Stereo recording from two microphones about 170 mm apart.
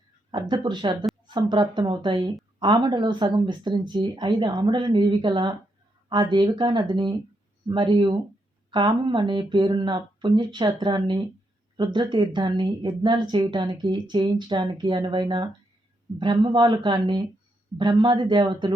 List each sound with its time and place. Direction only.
0.3 s speech: 30° right (ahead or behind)